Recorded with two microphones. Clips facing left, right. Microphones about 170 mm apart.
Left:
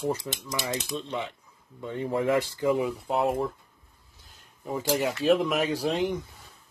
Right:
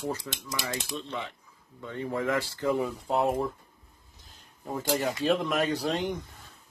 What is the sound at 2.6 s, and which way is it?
Speech, 5° left (ahead or behind).